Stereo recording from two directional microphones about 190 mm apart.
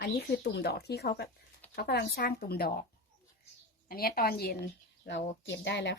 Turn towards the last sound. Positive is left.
turn(degrees=65)  # may be behind; listen again after turning